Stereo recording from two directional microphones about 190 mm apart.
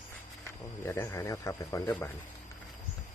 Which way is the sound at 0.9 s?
15° left (ahead or behind).